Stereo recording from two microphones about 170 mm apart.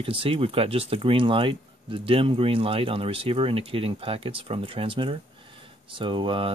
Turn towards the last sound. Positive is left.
turn(degrees=-30)  # may be behind; listen again after turning